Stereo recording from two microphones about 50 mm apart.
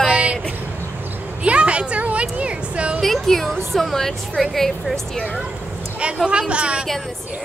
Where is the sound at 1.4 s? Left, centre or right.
Right.